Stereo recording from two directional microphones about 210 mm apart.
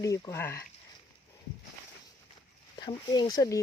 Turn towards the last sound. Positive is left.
turn(degrees=20)  # may be behind; listen again after turning